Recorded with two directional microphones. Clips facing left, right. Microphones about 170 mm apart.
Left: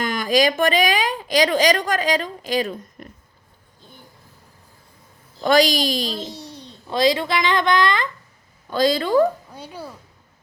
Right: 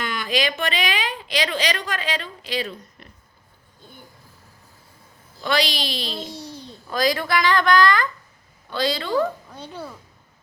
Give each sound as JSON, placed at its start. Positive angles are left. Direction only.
{"t": 0.0, "sound": "a woman's voice", "side_deg": 45}
{"t": 5.4, "sound": "a woman's voice", "side_deg": 45}
{"t": 6.1, "sound": "a sound", "side_deg": 0}
{"t": 6.8, "sound": "a woman's voice", "side_deg": 25}
{"t": 8.7, "sound": "a woman's voice", "side_deg": 45}
{"t": 9.5, "sound": "speech", "side_deg": 10}